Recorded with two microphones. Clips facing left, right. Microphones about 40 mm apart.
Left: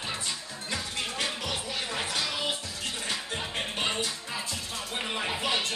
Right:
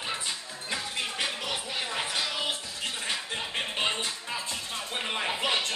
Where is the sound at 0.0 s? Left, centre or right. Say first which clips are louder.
Right 1 dB; centre.